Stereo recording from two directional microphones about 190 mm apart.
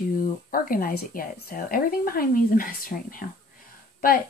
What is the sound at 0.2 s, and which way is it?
Speech, 50° left (ahead or behind).